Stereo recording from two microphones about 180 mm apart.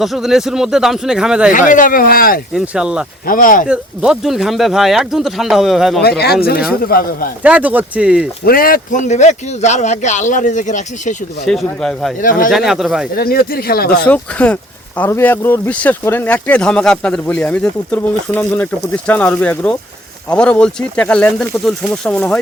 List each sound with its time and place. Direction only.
0.0 s speech: centre (ahead or behind)
1.5 s speech: 45° left (ahead or behind)
2.5 s speech: 5° right (ahead or behind)
3.2 s speech: 50° left (ahead or behind)
3.7 s speech: 5° right (ahead or behind)
6.0 s speech: 60° left (ahead or behind)
7.4 s speech: 10° right (ahead or behind)
8.4 s speech: 55° left (ahead or behind)
11.4 s speech: 5° left (ahead or behind)
12.2 s speech: 50° left (ahead or behind)
12.5 s speech: centre (ahead or behind)
13.1 s speech: 55° left (ahead or behind)
13.9 s speech: 5° left (ahead or behind)